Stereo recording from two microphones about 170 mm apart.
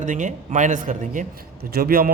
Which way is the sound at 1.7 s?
60° right (ahead or behind).